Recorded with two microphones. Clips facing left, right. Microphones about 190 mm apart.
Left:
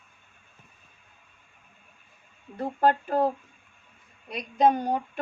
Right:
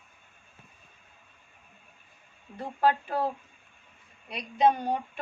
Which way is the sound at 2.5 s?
45° left (ahead or behind).